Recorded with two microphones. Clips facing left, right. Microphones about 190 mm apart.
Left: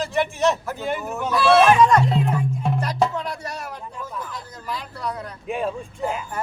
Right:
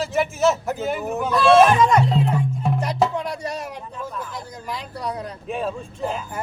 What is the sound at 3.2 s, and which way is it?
Music, 15° right (ahead or behind).